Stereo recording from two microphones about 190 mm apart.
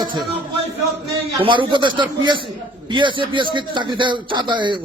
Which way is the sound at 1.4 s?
25° right (ahead or behind).